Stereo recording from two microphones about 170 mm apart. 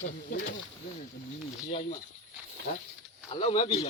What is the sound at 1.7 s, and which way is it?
Speech, 35° left (ahead or behind).